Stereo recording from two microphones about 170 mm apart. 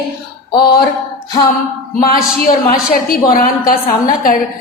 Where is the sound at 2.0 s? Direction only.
55° left (ahead or behind).